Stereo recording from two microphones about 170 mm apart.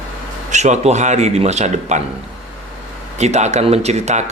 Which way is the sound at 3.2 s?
40° right (ahead or behind).